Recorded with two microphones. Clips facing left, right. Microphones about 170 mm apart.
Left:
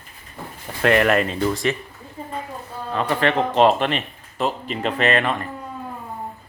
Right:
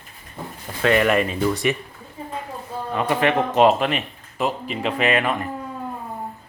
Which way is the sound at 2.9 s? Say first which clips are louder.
Right 1 dB; 10° right (ahead or behind).